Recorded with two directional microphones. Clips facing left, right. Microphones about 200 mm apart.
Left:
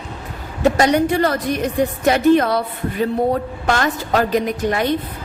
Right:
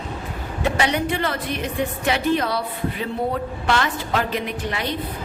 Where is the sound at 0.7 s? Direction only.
40° left (ahead or behind).